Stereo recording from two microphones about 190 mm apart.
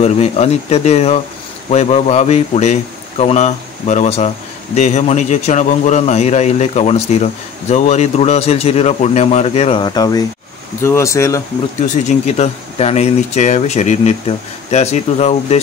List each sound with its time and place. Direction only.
0.0 s speech: 35° left (ahead or behind); by 11.4 s 15° left (ahead or behind)
11.8 s speech: 40° left (ahead or behind)